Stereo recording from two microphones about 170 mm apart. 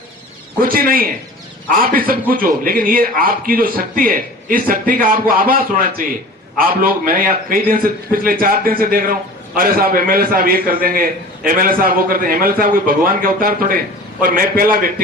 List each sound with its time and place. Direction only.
0.6 s a man's voice: 60° right (ahead or behind)